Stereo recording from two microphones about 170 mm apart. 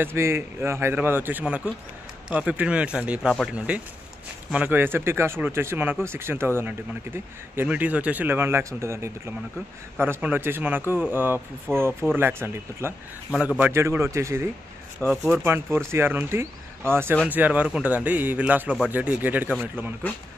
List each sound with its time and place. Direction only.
0.0 s speech: 15° right (ahead or behind)
15.0 s speech: 10° left (ahead or behind)
15.4 s speech: 15° right (ahead or behind)